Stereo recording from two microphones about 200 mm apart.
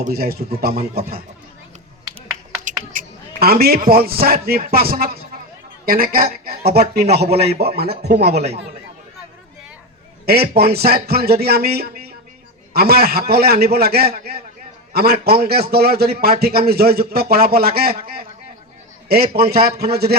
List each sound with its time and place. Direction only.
0.0 s speech: 50° right (ahead or behind)
2.6 s a man's voice: 40° right (ahead or behind)
10.2 s speech: 50° right (ahead or behind)